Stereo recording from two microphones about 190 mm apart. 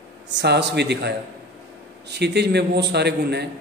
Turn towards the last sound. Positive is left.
turn(degrees=-60)  # may be behind; listen again after turning